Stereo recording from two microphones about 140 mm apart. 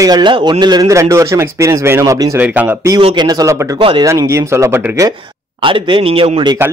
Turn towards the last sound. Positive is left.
turn(degrees=-40)  # may be behind; listen again after turning